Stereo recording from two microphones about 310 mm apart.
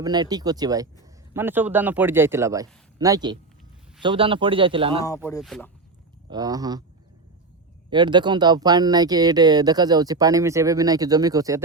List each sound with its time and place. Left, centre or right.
0.0 s speech: centre
5.0 s speech: centre
6.3 s speech: centre
7.9 s speech: centre